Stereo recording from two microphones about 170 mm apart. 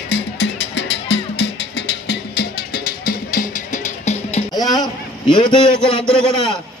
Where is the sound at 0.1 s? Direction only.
90° left; by 3.8 s 60° left (ahead or behind).